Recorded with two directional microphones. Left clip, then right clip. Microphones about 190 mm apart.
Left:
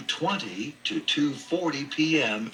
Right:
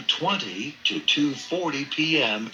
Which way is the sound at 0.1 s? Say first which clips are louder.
Right 4 dB; 20° right (ahead or behind).